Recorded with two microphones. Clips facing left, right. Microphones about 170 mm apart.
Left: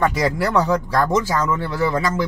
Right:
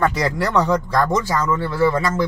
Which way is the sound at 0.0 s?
5° left (ahead or behind).